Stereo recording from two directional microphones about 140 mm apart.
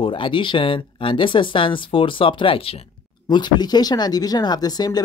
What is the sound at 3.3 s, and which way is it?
Speech, 30° left (ahead or behind).